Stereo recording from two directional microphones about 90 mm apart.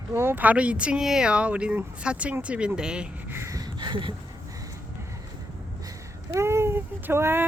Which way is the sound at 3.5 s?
50° right (ahead or behind).